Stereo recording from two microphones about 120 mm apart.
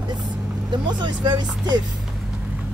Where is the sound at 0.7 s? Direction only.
40° right (ahead or behind).